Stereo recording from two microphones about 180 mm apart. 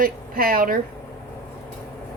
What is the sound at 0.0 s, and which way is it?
Speech, 55° right (ahead or behind).